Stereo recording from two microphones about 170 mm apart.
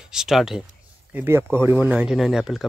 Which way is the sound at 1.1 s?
15° right (ahead or behind).